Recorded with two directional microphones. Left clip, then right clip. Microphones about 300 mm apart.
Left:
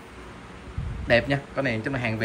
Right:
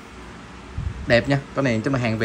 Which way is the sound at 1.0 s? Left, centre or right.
Centre.